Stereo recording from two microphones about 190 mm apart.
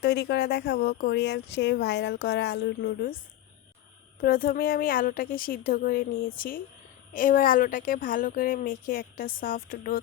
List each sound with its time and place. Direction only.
0.0 s speech: 60° left (ahead or behind)
4.2 s a woman's voice: 50° left (ahead or behind)